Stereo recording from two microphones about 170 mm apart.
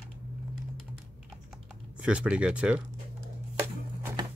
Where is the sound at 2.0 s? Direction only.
5° right (ahead or behind).